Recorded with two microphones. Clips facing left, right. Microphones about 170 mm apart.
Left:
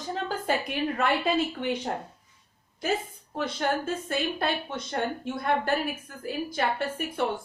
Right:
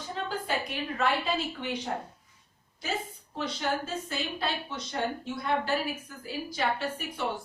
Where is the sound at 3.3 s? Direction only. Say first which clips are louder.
Left 3 dB; 55° left (ahead or behind).